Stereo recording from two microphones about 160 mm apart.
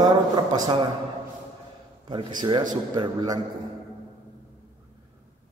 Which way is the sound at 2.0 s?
30° right (ahead or behind).